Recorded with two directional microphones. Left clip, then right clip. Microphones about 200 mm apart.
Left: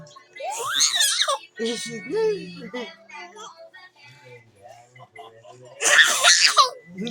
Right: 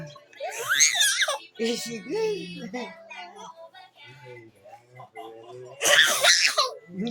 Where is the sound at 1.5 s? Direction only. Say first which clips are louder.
Left 1 dB; 10° right (ahead or behind).